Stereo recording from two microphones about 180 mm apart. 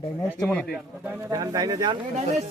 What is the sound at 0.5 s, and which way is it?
Speech, 5° left (ahead or behind).